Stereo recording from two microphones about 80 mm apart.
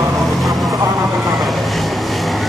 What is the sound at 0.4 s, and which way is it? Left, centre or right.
Vehicle, centre.